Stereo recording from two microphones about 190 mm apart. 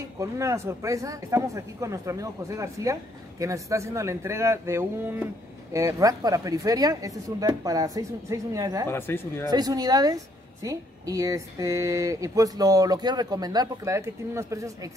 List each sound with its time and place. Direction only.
0.2 s speech: 15° right (ahead or behind)
8.8 s speech: 10° left (ahead or behind)
9.5 s speech: 20° right (ahead or behind)